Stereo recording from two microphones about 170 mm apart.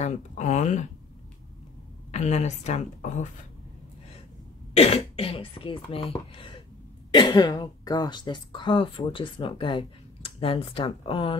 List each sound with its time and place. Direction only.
0.0 s speech: 45° left (ahead or behind)
2.0 s speech: 40° left (ahead or behind)
4.7 s speech: 35° left (ahead or behind)